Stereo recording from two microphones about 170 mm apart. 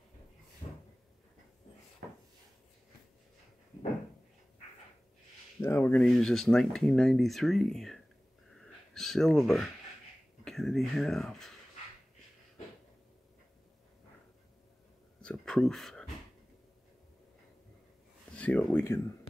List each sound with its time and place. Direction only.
0.6 s cupboard open or close: 35° left (ahead or behind)
5.6 s speech: 15° left (ahead or behind)
8.5 s a sound: centre (ahead or behind)
10.4 s speech: centre (ahead or behind)
15.2 s a sound: 5° left (ahead or behind)
18.3 s speech: 5° left (ahead or behind)